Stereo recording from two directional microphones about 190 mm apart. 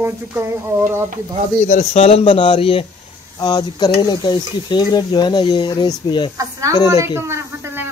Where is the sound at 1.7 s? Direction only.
35° left (ahead or behind).